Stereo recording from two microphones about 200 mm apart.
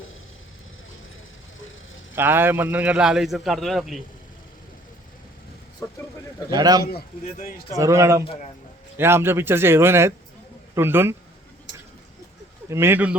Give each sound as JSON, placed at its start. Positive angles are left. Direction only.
{"t": 2.1, "sound": "a man's voice", "side_deg": -10}
{"t": 6.5, "sound": "a man's voice", "side_deg": -20}
{"t": 12.6, "sound": "a man's voice", "side_deg": -10}